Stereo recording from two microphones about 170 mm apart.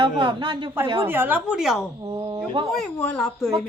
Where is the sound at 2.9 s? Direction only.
5° left (ahead or behind).